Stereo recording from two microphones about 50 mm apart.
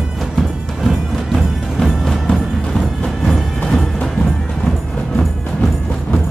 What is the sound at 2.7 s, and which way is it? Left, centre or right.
Music, centre.